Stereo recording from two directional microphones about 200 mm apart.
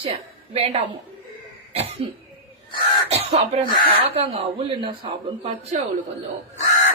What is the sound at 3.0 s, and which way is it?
A woman's voice, 30° right (ahead or behind).